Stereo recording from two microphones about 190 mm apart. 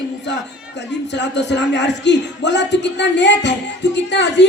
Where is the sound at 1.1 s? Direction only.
65° left (ahead or behind).